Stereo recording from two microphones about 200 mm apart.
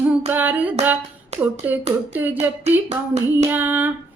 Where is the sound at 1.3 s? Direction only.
30° right (ahead or behind).